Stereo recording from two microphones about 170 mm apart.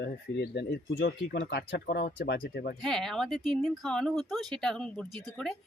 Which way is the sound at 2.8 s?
Centre (ahead or behind).